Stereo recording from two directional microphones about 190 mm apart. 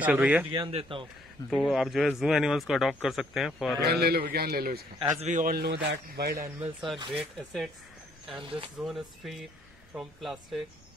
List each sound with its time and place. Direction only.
0.0 s a man's voice: 5° right (ahead or behind)
0.5 s speech: 30° right (ahead or behind)
1.5 s speech: centre (ahead or behind)
3.8 s a man's voice: 55° right (ahead or behind)
4.9 s speech: 25° right (ahead or behind)
5.3 s a man's voice: 50° right (ahead or behind)
6.6 s speech: centre (ahead or behind)
7.0 s speech: 25° right (ahead or behind)
8.4 s speech: 25° right (ahead or behind)
8.7 s speech: centre (ahead or behind)